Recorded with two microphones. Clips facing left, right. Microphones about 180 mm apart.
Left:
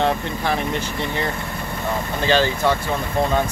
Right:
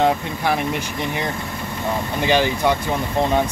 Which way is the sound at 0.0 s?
15° right (ahead or behind).